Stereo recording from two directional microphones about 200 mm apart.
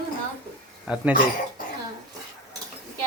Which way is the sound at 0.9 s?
5° right (ahead or behind).